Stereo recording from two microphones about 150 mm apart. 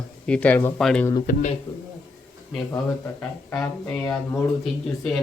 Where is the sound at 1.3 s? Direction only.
60° left (ahead or behind).